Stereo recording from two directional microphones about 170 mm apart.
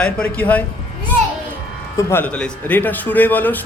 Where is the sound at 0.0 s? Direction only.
10° left (ahead or behind).